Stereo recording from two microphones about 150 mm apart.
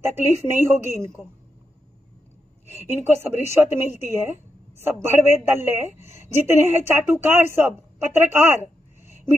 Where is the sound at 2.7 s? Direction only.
15° right (ahead or behind).